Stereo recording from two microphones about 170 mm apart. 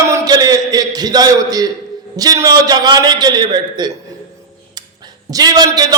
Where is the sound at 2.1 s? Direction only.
20° right (ahead or behind).